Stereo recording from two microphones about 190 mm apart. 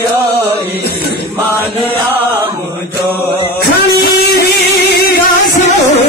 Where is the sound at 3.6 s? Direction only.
55° left (ahead or behind).